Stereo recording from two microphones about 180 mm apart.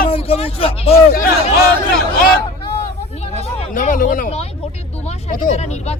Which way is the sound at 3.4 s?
45° left (ahead or behind).